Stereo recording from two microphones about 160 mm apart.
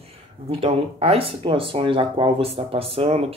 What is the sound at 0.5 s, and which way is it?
Speech, 35° right (ahead or behind).